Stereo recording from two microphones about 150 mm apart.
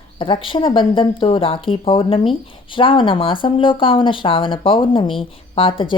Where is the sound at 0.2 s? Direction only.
35° left (ahead or behind).